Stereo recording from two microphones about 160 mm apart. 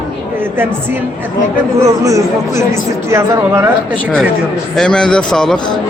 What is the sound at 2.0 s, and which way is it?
A woman's voice, 20° right (ahead or behind).